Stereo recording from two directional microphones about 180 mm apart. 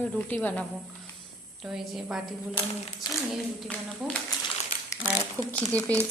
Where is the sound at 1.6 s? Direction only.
Centre (ahead or behind).